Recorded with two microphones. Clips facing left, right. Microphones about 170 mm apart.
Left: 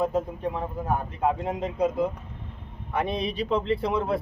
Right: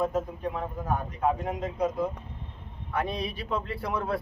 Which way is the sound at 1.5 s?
25° left (ahead or behind).